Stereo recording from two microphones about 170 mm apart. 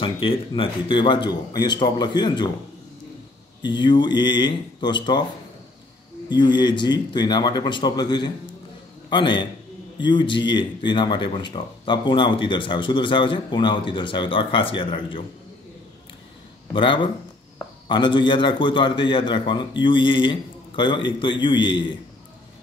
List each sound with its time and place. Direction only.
0.0 s speech: 30° left (ahead or behind)
3.6 s speech: 25° left (ahead or behind)
6.2 s speech: 25° left (ahead or behind)
16.7 s speech: 30° left (ahead or behind)